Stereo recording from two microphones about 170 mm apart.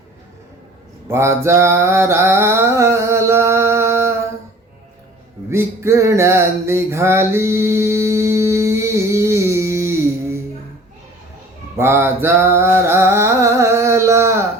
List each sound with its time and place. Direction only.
1.0 s mantra: 15° right (ahead or behind)
5.5 s a sound: 15° right (ahead or behind)
11.8 s mantra: 15° right (ahead or behind)